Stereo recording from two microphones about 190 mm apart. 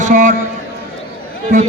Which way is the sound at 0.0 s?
40° right (ahead or behind).